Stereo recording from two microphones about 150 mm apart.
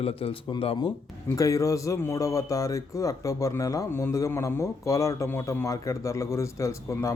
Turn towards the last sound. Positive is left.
turn(degrees=20)  # may be behind; listen again after turning